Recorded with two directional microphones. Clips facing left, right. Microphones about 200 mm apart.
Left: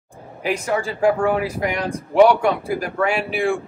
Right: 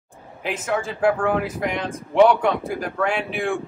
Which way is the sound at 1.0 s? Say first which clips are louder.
Left 2 dB; centre (ahead or behind).